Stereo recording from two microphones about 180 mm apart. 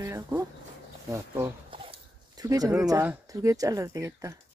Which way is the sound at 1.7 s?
30° right (ahead or behind).